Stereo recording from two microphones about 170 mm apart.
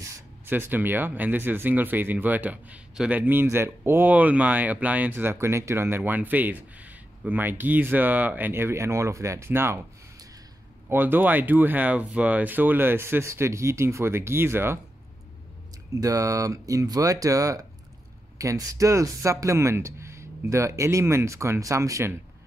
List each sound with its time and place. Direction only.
0.5 s speech: 10° right (ahead or behind)
15.9 s speech: 20° right (ahead or behind)